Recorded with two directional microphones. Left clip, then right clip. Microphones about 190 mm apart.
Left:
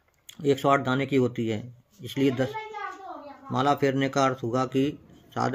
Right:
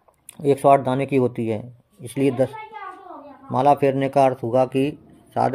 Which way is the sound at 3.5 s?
15° right (ahead or behind).